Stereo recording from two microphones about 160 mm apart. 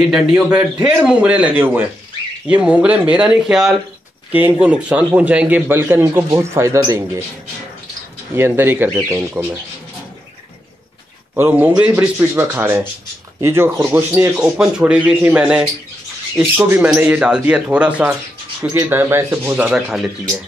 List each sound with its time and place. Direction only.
0.1 s a man's voice: 5° right (ahead or behind)
8.4 s a man's voice: 15° right (ahead or behind)
11.3 s a man's voice: 15° right (ahead or behind)
14.3 s a man's voice: 5° right (ahead or behind)
18.6 s a man's voice: 20° right (ahead or behind)
19.5 s speech: 5° right (ahead or behind)